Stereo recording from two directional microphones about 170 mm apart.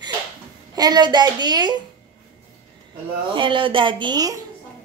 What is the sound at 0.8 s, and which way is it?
Speech, 25° right (ahead or behind).